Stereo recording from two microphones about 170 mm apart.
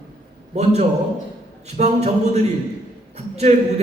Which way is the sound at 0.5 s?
40° right (ahead or behind).